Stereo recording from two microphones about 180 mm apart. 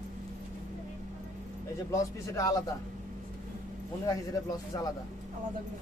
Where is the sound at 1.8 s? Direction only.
20° left (ahead or behind).